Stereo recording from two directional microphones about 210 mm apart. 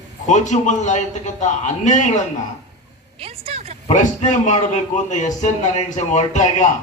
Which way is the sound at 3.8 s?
35° left (ahead or behind).